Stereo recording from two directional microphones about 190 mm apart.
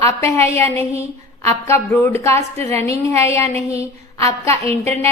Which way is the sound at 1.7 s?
15° left (ahead or behind).